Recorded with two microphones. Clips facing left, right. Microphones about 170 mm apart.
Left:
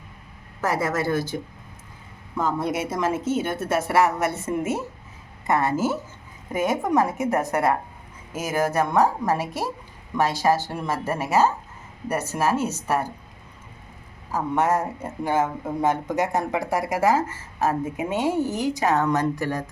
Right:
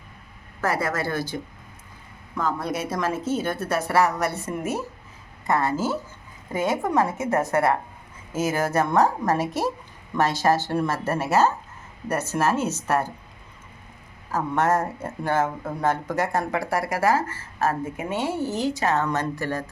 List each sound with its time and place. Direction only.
0.6 s a woman's voice: 20° left (ahead or behind)
2.4 s a woman's voice: 25° left (ahead or behind)
14.3 s speech: 15° left (ahead or behind)